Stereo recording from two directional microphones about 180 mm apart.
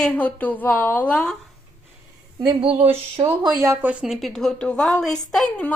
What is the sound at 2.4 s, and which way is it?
Speech, 30° right (ahead or behind).